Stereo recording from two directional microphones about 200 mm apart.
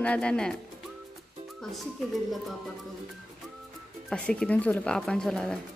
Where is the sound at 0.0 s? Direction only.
5° left (ahead or behind).